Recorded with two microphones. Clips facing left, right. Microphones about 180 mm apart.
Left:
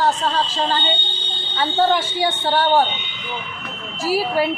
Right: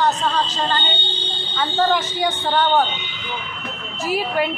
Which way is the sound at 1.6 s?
10° left (ahead or behind).